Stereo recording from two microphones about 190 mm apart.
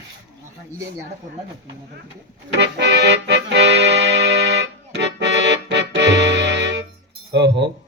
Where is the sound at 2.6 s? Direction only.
65° right (ahead or behind).